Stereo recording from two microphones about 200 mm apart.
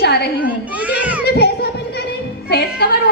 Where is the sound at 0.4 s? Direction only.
5° right (ahead or behind).